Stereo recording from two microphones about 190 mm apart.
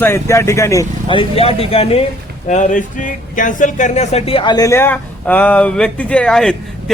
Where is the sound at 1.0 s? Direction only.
30° left (ahead or behind).